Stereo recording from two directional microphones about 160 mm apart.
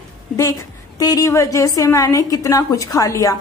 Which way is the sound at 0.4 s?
20° left (ahead or behind).